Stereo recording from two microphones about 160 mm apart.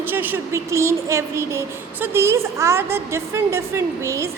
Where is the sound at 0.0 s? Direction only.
10° right (ahead or behind).